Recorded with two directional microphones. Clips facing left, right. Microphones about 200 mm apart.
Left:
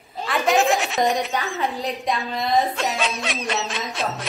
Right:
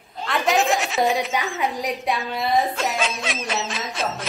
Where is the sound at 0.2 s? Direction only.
Centre (ahead or behind).